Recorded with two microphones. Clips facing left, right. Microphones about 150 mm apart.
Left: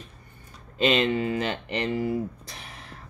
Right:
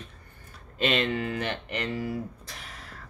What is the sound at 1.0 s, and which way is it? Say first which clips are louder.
Speech: left 4 dB; 20° left (ahead or behind).